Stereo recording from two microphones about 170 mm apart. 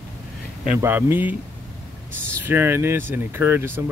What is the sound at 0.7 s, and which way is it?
Speech, 10° right (ahead or behind).